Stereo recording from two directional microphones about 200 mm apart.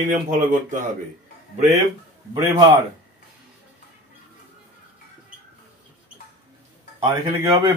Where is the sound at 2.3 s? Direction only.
15° right (ahead or behind).